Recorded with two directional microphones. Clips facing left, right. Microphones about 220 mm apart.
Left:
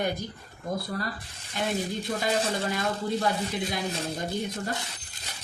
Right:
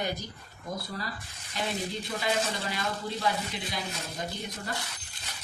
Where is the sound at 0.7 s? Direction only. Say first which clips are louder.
Left 5 dB; 55° left (ahead or behind).